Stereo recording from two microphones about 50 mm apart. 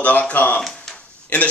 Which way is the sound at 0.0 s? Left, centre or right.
Left.